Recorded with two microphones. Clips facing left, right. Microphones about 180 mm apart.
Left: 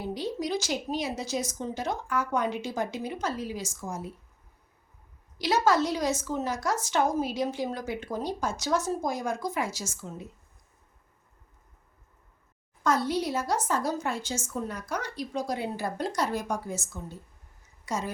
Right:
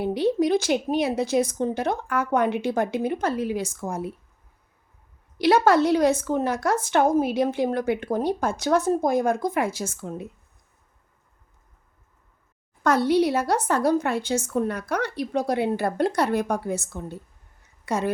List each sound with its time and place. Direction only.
0.0 s speech: 60° right (ahead or behind)
5.4 s speech: 60° right (ahead or behind)
12.8 s speech: 65° right (ahead or behind)